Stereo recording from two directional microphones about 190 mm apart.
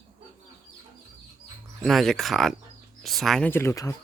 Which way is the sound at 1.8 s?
Centre (ahead or behind).